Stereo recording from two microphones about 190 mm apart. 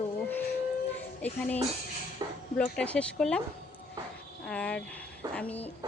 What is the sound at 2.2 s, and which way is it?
Speech, 20° right (ahead or behind).